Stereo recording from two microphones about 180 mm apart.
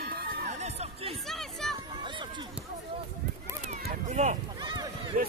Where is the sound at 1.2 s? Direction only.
Centre (ahead or behind).